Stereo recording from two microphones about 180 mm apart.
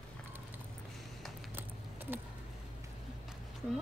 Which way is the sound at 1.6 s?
10° right (ahead or behind).